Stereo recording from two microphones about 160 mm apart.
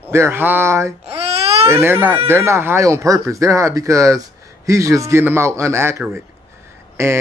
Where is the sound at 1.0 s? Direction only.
40° right (ahead or behind).